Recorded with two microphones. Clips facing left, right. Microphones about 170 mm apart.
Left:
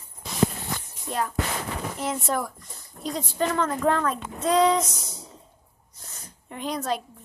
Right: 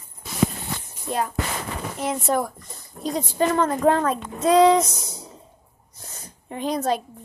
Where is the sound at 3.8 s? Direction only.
25° right (ahead or behind).